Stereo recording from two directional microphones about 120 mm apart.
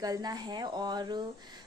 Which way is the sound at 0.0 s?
35° right (ahead or behind).